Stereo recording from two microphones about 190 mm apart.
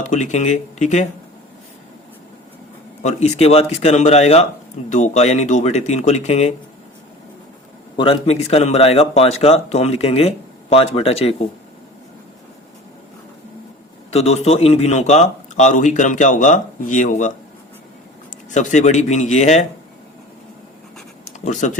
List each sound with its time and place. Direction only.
0.1 s speech: 40° left (ahead or behind)
3.0 s speech: 35° left (ahead or behind)
7.9 s speech: 30° left (ahead or behind)
14.1 s speech: 35° left (ahead or behind)
18.5 s speech: 40° left (ahead or behind)
21.4 s speech: 40° left (ahead or behind)